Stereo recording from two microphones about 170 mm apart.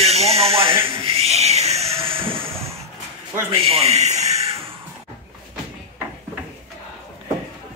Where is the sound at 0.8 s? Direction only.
30° right (ahead or behind).